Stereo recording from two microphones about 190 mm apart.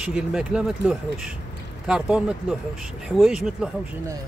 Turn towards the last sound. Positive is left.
turn(degrees=-5)  # may be behind; listen again after turning